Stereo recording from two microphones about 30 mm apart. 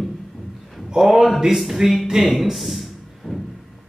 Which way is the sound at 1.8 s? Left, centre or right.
Centre.